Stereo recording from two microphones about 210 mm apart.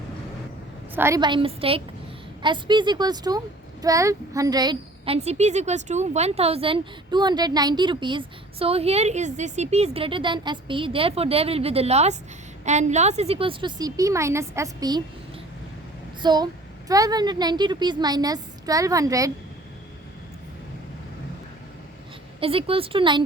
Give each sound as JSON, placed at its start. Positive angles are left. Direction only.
{"t": 0.9, "sound": "speech", "side_deg": -15}
{"t": 16.2, "sound": "speech", "side_deg": -20}
{"t": 22.4, "sound": "speech", "side_deg": -25}